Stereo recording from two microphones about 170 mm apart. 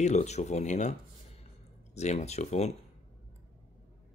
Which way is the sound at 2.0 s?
40° left (ahead or behind).